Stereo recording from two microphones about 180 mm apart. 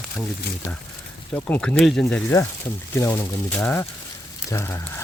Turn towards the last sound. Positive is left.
turn(degrees=10)  # may be behind; listen again after turning